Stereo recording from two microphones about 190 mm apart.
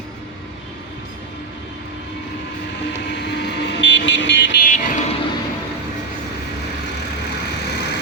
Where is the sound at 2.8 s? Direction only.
65° left (ahead or behind).